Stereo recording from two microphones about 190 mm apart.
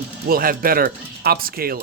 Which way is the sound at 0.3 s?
50° right (ahead or behind).